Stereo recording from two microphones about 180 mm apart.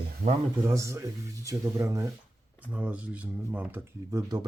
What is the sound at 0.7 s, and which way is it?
Speech, 15° right (ahead or behind).